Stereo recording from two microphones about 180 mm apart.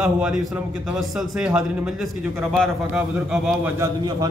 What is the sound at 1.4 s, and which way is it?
Speech, 5° right (ahead or behind).